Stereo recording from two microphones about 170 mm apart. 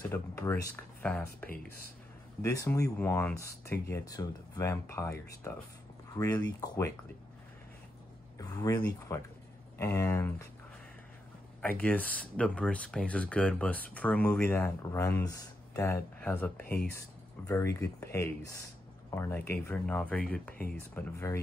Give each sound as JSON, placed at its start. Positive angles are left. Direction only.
{"t": 0.1, "sound": "speech", "side_deg": 15}
{"t": 2.4, "sound": "speech", "side_deg": 20}
{"t": 8.4, "sound": "speech", "side_deg": 20}
{"t": 11.8, "sound": "speech", "side_deg": 10}